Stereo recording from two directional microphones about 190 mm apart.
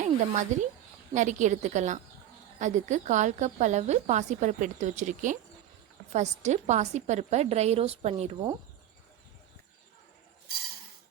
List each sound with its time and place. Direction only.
0.0 s a woman's voice: 40° right (ahead or behind)